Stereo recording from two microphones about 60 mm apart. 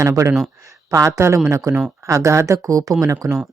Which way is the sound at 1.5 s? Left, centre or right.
Right.